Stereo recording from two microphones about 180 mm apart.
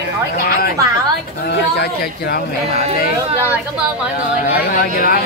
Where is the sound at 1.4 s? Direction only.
60° left (ahead or behind).